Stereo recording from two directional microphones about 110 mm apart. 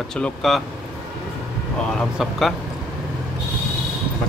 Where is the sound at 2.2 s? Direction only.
Centre (ahead or behind).